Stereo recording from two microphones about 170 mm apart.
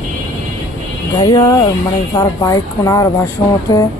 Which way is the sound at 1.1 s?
25° left (ahead or behind).